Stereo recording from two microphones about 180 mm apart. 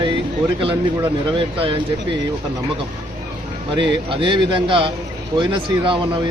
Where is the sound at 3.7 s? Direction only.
25° right (ahead or behind).